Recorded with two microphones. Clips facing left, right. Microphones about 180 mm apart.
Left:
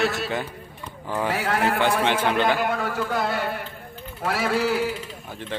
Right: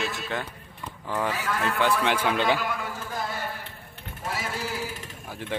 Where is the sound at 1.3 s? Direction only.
75° left (ahead or behind).